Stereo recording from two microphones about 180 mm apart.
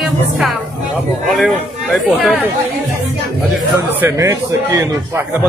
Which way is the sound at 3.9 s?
15° right (ahead or behind).